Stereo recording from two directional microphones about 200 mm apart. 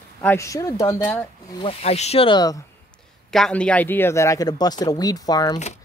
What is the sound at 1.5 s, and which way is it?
Speech, 30° left (ahead or behind).